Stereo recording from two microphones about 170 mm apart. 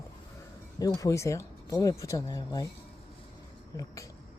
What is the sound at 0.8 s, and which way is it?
Speech, 20° left (ahead or behind).